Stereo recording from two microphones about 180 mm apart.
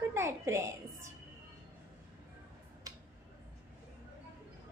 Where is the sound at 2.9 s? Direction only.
20° right (ahead or behind).